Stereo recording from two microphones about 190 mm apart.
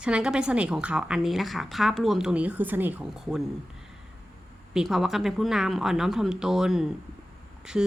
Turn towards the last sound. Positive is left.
turn(degrees=-5)  # may be behind; listen again after turning